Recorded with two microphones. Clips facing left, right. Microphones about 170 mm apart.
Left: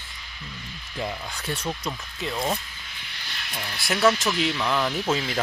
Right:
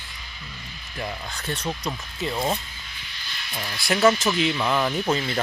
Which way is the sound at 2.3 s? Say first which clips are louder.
Right 1 dB; 10° right (ahead or behind).